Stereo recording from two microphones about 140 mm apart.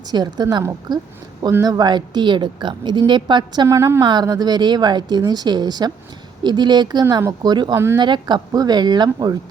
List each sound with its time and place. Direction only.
0.1 s a woman's voice: 30° right (ahead or behind)